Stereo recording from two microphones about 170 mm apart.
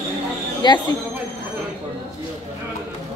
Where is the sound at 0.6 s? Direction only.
25° left (ahead or behind).